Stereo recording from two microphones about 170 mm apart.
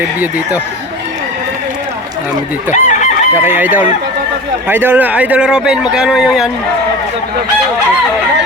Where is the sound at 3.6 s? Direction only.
10° right (ahead or behind).